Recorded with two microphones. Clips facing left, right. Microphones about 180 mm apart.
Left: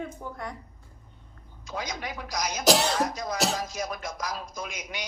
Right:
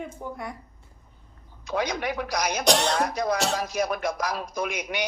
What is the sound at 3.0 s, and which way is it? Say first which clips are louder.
Speech: right 3 dB; 65° right (ahead or behind).